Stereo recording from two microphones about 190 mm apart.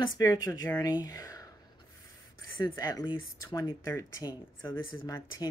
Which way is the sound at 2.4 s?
15° left (ahead or behind).